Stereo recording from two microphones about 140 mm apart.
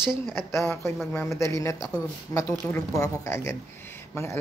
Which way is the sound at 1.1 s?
20° left (ahead or behind).